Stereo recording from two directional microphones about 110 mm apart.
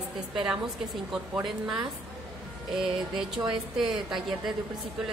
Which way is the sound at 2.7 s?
Centre (ahead or behind).